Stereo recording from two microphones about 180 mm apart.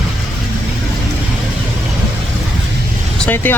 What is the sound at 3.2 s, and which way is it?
Speech, 10° left (ahead or behind).